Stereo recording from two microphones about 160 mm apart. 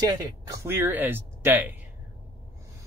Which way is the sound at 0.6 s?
15° right (ahead or behind).